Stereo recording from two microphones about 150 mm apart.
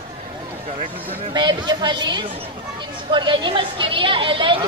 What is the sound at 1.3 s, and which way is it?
A woman's voice, 30° right (ahead or behind).